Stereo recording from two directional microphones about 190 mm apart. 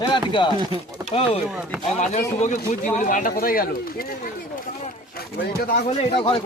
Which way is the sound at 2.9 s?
45° left (ahead or behind).